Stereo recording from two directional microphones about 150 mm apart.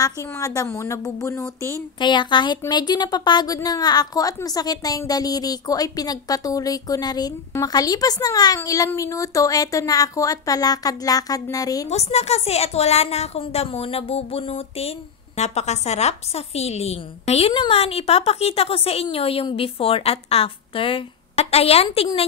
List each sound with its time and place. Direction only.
0.0 s a woman's voice: 20° left (ahead or behind)
2.0 s a woman's voice: 30° left (ahead or behind)
11.9 s a woman's voice: 45° left (ahead or behind)